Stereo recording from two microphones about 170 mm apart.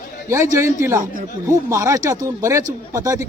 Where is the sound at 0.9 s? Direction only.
55° right (ahead or behind).